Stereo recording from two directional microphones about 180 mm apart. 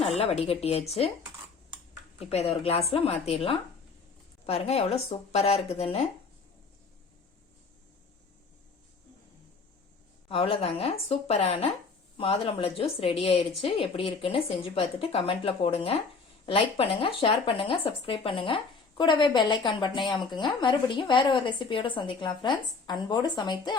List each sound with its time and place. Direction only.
0.0 s speech: 35° left (ahead or behind)
2.1 s speech: 35° left (ahead or behind)
10.2 s speech: 30° left (ahead or behind)